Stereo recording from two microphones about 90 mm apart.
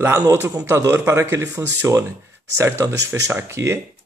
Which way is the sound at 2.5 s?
30° right (ahead or behind).